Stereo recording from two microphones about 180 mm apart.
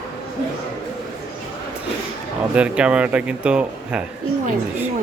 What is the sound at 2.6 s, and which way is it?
Speech, 5° right (ahead or behind).